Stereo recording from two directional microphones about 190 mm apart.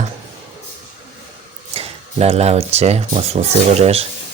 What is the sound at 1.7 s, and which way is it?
Speech, 30° right (ahead or behind).